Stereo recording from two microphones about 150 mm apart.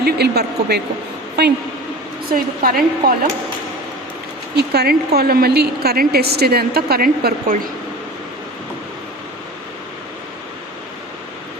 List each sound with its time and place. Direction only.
0.0 s a woman's voice: 90° right
2.3 s a woman's voice: 70° right (ahead or behind)
4.5 s a woman's voice: 90° right